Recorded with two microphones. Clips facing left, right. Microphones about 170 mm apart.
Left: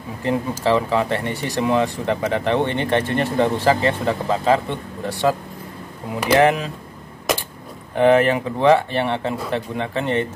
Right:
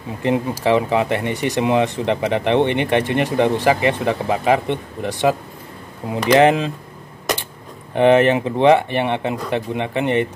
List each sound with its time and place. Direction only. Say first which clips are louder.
0.2 s speech: right 2 dB; 20° right (ahead or behind)
6.3 s speech: right 2 dB; 20° right (ahead or behind)
7.9 s speech: right 2 dB; 20° right (ahead or behind)